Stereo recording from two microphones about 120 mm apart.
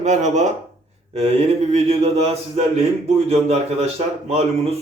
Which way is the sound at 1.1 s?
60° right (ahead or behind).